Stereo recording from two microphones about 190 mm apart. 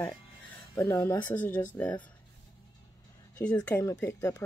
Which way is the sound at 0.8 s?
15° left (ahead or behind).